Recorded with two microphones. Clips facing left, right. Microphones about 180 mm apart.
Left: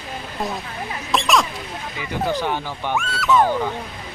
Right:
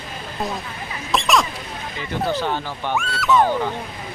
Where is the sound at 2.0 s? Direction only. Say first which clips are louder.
Even; 10° left (ahead or behind).